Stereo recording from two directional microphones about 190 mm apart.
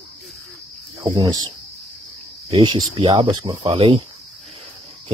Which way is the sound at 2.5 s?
25° right (ahead or behind).